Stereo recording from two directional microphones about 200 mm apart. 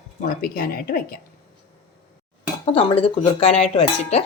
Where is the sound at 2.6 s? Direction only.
25° left (ahead or behind).